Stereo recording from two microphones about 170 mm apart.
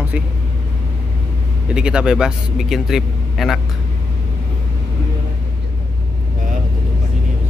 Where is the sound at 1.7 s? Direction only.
5° right (ahead or behind).